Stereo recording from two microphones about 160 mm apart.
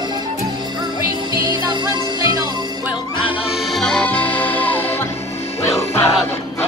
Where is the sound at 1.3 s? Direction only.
25° right (ahead or behind).